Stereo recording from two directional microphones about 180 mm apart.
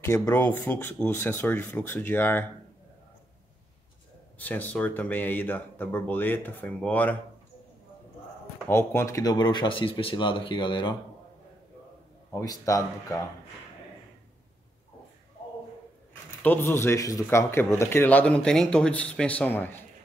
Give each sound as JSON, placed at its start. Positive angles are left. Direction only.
{"t": 0.0, "sound": "speech", "side_deg": 15}
{"t": 4.4, "sound": "speech", "side_deg": 10}
{"t": 8.6, "sound": "speech", "side_deg": 15}
{"t": 12.3, "sound": "speech", "side_deg": 20}
{"t": 16.4, "sound": "speech", "side_deg": 15}